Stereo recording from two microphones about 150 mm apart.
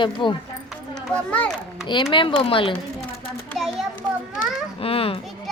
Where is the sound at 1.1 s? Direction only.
10° left (ahead or behind).